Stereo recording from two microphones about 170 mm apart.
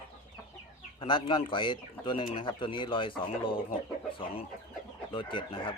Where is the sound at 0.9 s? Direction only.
30° left (ahead or behind).